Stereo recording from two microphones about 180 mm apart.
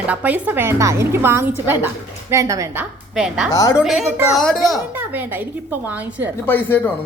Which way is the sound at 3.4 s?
20° left (ahead or behind).